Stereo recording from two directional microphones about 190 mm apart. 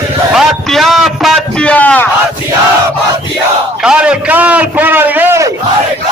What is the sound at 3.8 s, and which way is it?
A man's voice, 5° right (ahead or behind).